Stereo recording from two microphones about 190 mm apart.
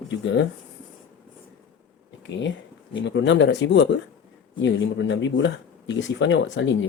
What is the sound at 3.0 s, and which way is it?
Speech, 70° left (ahead or behind).